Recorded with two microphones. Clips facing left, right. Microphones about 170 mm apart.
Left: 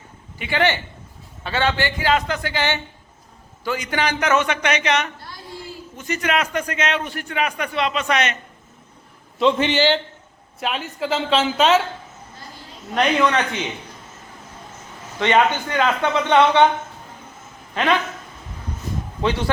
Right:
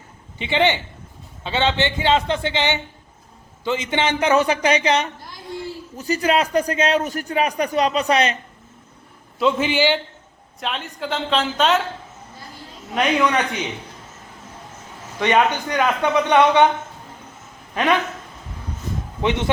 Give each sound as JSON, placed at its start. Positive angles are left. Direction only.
{"t": 0.3, "sound": "a man's voice", "side_deg": -25}
{"t": 9.4, "sound": "a woman's voice", "side_deg": -5}
{"t": 10.6, "sound": "a woman's voice", "side_deg": 5}
{"t": 12.9, "sound": "a man's voice", "side_deg": -10}
{"t": 15.2, "sound": "a man's voice", "side_deg": -15}
{"t": 19.2, "sound": "a man's voice", "side_deg": -20}